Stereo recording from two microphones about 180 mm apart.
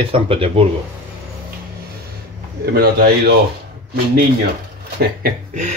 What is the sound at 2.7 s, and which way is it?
Speech, 60° right (ahead or behind).